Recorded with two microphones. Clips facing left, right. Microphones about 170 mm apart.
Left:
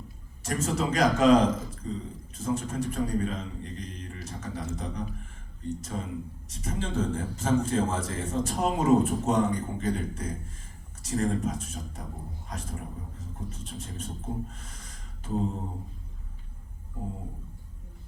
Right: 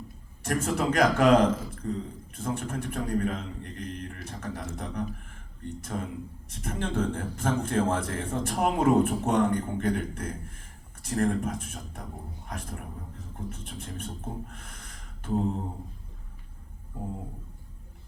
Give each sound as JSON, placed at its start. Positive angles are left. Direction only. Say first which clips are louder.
{"t": 0.4, "sound": "a man's voice", "louder": "right 2 dB", "side_deg": -60}